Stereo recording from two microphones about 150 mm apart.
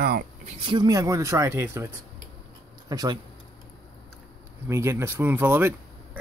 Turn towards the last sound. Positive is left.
turn(degrees=-15)  # may be behind; listen again after turning